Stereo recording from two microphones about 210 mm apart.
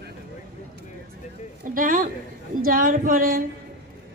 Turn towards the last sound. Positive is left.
turn(degrees=-40)  # may be behind; listen again after turning